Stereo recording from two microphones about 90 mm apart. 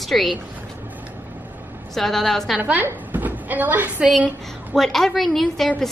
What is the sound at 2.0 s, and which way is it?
Speech, 5° left (ahead or behind).